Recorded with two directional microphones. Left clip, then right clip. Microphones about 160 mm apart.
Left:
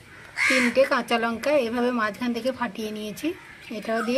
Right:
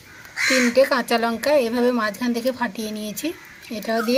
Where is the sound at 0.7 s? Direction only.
15° right (ahead or behind).